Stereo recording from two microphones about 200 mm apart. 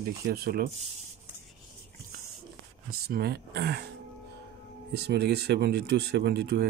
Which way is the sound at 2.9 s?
50° right (ahead or behind).